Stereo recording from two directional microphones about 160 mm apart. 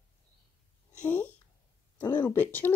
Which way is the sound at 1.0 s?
10° left (ahead or behind).